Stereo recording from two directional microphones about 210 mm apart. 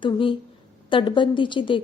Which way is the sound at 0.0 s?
25° left (ahead or behind).